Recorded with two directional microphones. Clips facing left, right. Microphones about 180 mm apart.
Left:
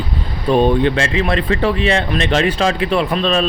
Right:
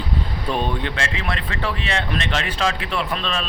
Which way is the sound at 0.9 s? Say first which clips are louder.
Left 9 dB; 20° left (ahead or behind).